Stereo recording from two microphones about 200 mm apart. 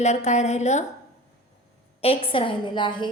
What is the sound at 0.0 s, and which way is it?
Speech, 35° left (ahead or behind).